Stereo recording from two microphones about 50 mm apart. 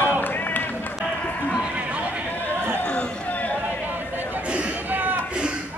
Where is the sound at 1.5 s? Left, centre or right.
Centre.